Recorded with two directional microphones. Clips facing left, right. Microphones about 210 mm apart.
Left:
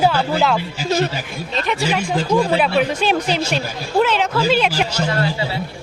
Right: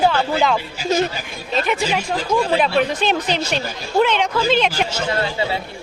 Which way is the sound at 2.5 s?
5° left (ahead or behind).